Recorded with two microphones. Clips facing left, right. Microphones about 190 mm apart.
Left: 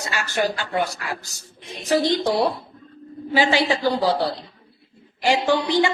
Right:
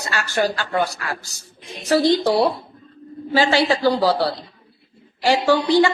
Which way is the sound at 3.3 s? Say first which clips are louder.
Right 2 dB; 15° left (ahead or behind).